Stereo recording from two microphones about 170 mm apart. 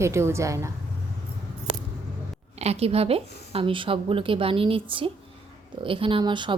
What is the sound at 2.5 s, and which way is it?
A woman's voice, 35° right (ahead or behind).